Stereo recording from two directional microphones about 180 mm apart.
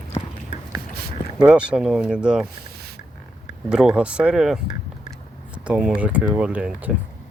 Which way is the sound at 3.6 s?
5° right (ahead or behind).